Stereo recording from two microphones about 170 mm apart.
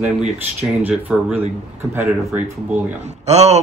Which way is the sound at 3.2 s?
40° right (ahead or behind).